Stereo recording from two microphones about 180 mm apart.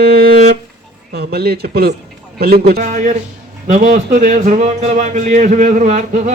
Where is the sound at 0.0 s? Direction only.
60° right (ahead or behind).